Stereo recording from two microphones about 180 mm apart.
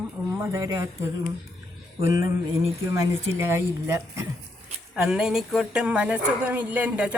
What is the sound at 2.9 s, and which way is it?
Speech, 15° right (ahead or behind).